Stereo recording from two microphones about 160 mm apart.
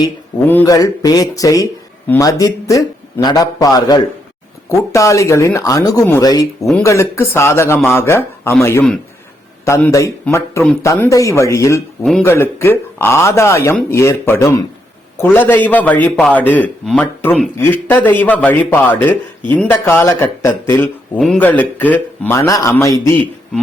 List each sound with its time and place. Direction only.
0.4 s a man's voice: 15° left (ahead or behind)
9.6 s a man's voice: 20° left (ahead or behind)